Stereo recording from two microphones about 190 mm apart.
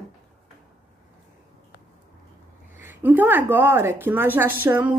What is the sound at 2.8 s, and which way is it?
A woman's voice, 10° right (ahead or behind).